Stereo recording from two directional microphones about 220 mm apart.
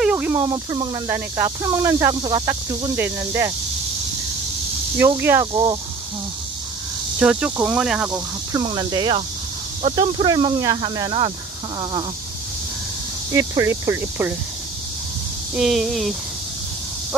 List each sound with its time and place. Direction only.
0.0 s speech: 5° right (ahead or behind)
4.9 s speech: 10° right (ahead or behind)
7.2 s cricket: 5° right (ahead or behind)
8.1 s speech: 15° right (ahead or behind)
13.3 s speech: 10° right (ahead or behind)
15.5 s cricket: centre (ahead or behind)